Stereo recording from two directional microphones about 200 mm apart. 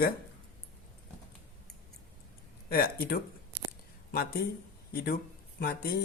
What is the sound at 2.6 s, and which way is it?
A woman's voice, 50° left (ahead or behind).